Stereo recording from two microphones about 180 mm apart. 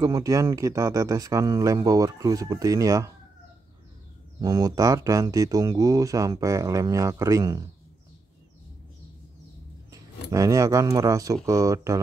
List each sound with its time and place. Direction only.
0.0 s speech: 20° right (ahead or behind)
4.4 s speech: 20° right (ahead or behind)
9.8 s speech: 20° right (ahead or behind)